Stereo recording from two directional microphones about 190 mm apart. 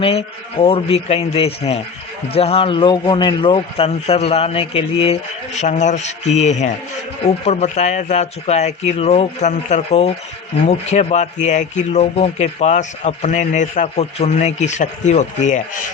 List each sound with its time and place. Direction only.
0.0 s speech: 30° left (ahead or behind)